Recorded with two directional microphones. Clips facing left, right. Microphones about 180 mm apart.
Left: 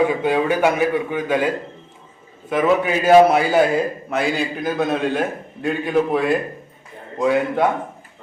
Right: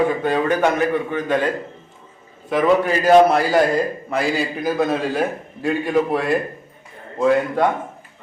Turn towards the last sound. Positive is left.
turn(degrees=5)  # may be behind; listen again after turning